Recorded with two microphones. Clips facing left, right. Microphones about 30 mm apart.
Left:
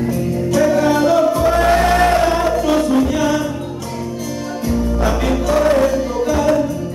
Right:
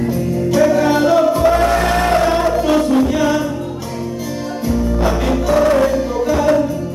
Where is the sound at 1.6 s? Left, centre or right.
Left.